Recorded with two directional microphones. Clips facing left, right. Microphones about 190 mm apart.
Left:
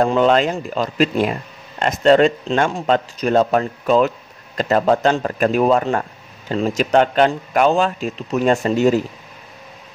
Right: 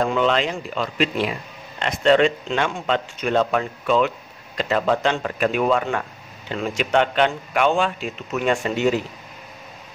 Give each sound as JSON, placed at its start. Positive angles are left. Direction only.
{"t": 0.0, "sound": "speech", "side_deg": 45}